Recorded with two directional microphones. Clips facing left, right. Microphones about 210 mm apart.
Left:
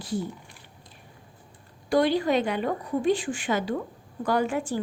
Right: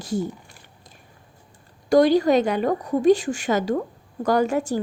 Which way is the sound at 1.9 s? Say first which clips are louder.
Right 6 dB; 40° right (ahead or behind).